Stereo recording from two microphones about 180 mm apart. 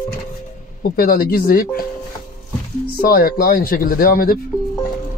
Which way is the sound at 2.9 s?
55° left (ahead or behind).